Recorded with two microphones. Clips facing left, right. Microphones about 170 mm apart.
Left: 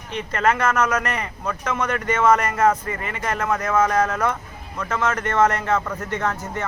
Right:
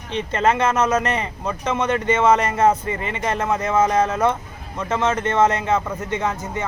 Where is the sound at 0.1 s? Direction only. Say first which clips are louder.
Right 2 dB; 25° right (ahead or behind).